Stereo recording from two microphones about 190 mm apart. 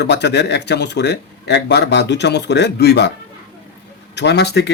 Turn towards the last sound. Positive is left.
turn(degrees=65)  # may be behind; listen again after turning